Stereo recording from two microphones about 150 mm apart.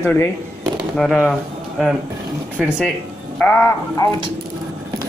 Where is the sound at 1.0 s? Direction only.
5° left (ahead or behind).